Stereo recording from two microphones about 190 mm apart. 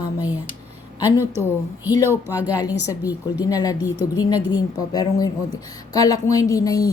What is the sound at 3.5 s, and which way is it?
A woman's voice, 20° left (ahead or behind).